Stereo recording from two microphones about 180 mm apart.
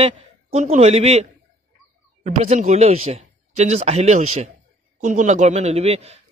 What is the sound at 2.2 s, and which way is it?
A man's voice, 40° right (ahead or behind).